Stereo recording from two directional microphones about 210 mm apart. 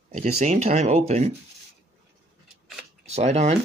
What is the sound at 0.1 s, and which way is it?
Speech, 35° right (ahead or behind).